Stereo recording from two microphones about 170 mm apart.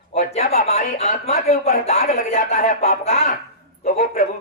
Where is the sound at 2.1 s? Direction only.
50° left (ahead or behind).